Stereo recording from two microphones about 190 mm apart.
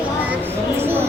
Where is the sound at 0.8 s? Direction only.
10° right (ahead or behind).